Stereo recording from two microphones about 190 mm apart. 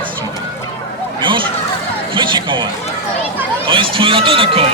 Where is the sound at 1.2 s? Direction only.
25° right (ahead or behind).